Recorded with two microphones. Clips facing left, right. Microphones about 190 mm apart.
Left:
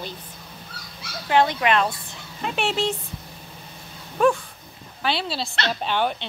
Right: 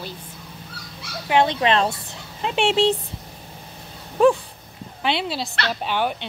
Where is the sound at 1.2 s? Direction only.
20° right (ahead or behind).